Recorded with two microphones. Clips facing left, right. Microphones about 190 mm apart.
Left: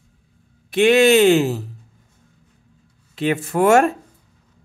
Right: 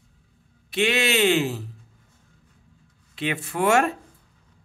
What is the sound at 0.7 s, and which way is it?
Speech, 50° left (ahead or behind).